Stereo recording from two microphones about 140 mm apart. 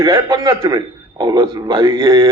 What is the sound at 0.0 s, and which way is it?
A man's voice, 30° right (ahead or behind).